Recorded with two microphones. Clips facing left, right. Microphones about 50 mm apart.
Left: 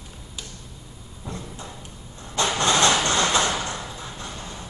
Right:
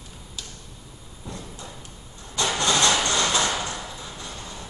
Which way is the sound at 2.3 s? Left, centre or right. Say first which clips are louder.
Left 2 dB; left.